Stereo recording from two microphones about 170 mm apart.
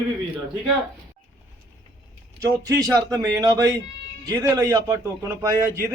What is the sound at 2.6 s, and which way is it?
A man's voice, 20° right (ahead or behind).